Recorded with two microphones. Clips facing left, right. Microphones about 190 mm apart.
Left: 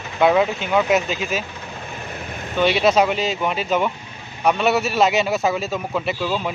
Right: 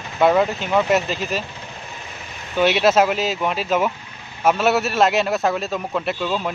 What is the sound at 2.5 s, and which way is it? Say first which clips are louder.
Speech: right 1 dB; 5° right (ahead or behind).